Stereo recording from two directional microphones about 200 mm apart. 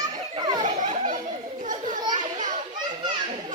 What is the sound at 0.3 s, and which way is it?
Children playing, 20° right (ahead or behind).